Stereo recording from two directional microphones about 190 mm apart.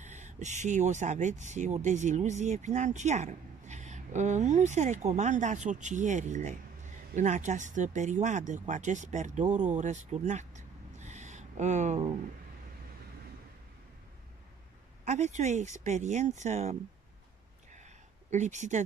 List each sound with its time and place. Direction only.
0.0 s speech: 40° right (ahead or behind)
9.6 s owl: 40° right (ahead or behind)
15.0 s speech: 40° right (ahead or behind)
17.6 s a sound: 40° right (ahead or behind)